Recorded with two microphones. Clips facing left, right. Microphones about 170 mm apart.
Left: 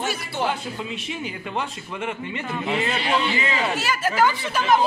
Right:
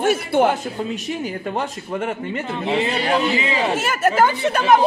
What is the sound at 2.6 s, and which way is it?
Speech, 35° right (ahead or behind).